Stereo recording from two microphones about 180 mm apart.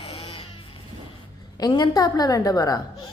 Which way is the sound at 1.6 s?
20° left (ahead or behind).